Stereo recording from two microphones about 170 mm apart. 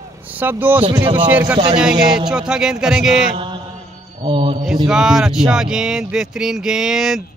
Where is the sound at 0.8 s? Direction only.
30° right (ahead or behind).